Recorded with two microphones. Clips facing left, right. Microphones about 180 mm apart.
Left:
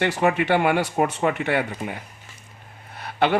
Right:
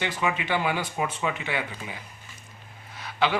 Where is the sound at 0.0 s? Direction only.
65° left (ahead or behind).